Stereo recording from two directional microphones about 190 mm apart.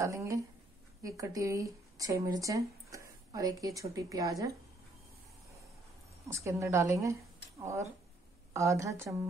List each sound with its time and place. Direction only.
0.0 s a woman's voice: 15° right (ahead or behind)
6.2 s a woman's voice: 15° right (ahead or behind)